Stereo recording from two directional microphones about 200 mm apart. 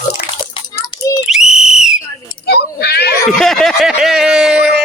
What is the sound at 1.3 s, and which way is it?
Whistle, 5° right (ahead or behind).